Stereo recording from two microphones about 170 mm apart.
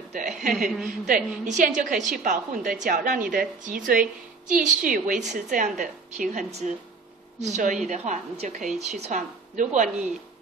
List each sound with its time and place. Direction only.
0.4 s a woman's voice: 50° right (ahead or behind)